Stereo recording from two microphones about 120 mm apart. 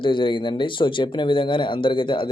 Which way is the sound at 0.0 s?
45° left (ahead or behind).